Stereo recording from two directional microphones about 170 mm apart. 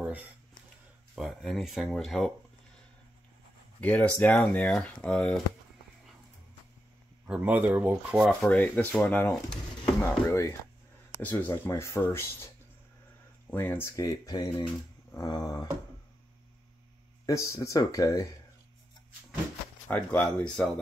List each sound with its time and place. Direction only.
1.1 s speech: centre (ahead or behind)
3.8 s speech: 10° left (ahead or behind)
7.2 s speech: 10° right (ahead or behind)
8.3 s speech: 10° left (ahead or behind)
13.5 s speech: 10° left (ahead or behind)
17.3 s speech: 20° left (ahead or behind)
19.9 s speech: 10° left (ahead or behind)